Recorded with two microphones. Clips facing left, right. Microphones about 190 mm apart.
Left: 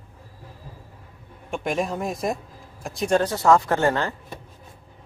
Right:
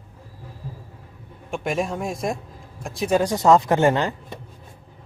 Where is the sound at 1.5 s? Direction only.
Centre (ahead or behind).